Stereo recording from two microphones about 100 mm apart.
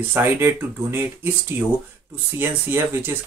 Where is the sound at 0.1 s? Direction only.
20° right (ahead or behind).